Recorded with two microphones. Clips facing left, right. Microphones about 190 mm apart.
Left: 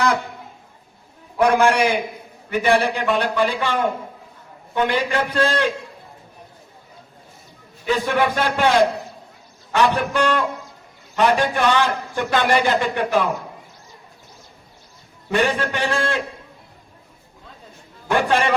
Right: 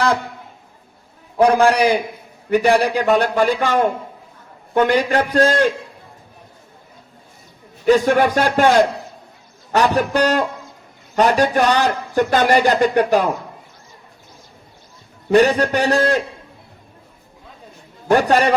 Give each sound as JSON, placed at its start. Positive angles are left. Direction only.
{"t": 1.4, "sound": "a man's voice", "side_deg": -35}
{"t": 7.9, "sound": "a man's voice", "side_deg": -45}
{"t": 15.3, "sound": "a man's voice", "side_deg": -40}
{"t": 18.1, "sound": "a man's voice", "side_deg": -40}